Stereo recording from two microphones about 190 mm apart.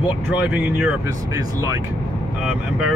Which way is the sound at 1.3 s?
20° right (ahead or behind).